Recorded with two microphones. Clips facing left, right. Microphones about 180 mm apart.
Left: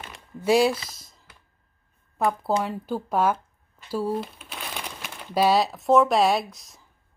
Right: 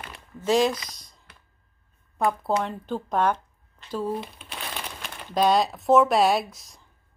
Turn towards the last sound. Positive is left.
turn(degrees=0)  # may be behind; listen again after turning